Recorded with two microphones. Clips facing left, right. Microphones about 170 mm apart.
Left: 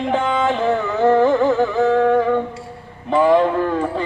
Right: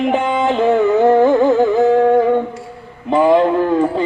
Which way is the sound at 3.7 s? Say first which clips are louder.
Right 6 dB; 15° right (ahead or behind).